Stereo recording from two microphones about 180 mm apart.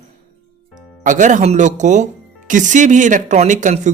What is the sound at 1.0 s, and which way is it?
Speech, 45° right (ahead or behind).